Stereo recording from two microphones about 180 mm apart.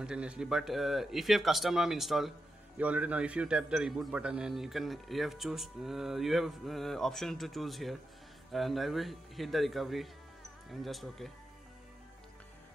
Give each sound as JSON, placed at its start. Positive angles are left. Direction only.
{"t": 0.0, "sound": "a man's voice", "side_deg": -5}